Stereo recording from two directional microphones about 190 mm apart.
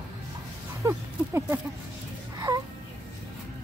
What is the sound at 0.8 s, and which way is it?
Speech, 15° right (ahead or behind).